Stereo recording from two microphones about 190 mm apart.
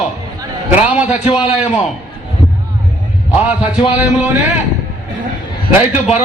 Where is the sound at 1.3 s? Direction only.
30° left (ahead or behind).